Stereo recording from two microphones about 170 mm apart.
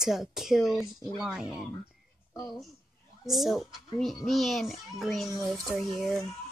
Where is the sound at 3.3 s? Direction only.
Centre (ahead or behind).